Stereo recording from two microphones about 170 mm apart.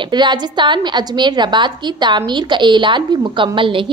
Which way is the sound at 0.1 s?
25° right (ahead or behind).